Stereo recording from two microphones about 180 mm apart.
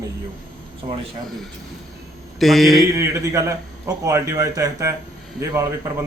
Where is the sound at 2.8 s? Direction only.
20° right (ahead or behind).